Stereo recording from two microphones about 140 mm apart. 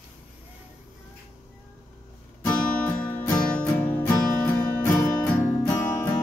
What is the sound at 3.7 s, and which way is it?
Music, 15° left (ahead or behind).